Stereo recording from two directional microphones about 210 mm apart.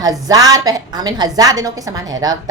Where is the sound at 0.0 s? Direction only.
20° right (ahead or behind).